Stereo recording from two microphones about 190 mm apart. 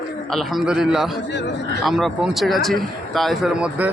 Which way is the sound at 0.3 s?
5° right (ahead or behind).